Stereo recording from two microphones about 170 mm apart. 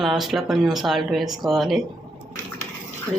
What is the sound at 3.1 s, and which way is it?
Speech, 15° right (ahead or behind).